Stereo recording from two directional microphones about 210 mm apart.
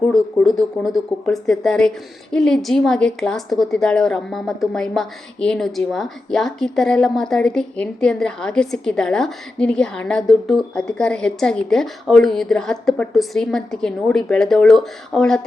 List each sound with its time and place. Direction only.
0.0 s speech: centre (ahead or behind)